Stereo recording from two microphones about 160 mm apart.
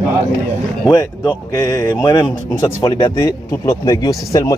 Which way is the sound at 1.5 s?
20° left (ahead or behind).